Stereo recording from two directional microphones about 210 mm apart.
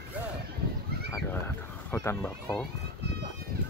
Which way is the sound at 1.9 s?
10° left (ahead or behind).